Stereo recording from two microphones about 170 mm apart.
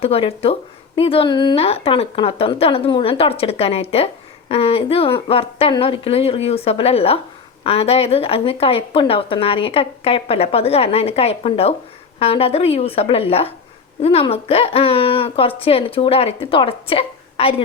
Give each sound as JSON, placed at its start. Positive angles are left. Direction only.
{"t": 0.0, "sound": "speech", "side_deg": 35}